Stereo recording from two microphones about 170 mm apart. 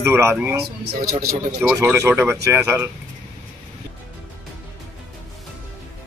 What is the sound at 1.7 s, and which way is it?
A man's voice, 15° right (ahead or behind).